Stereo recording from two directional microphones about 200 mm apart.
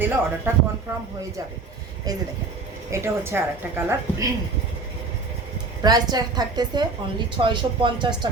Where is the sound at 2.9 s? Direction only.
15° right (ahead or behind).